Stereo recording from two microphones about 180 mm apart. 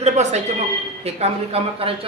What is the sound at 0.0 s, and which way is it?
A woman's voice, 40° right (ahead or behind).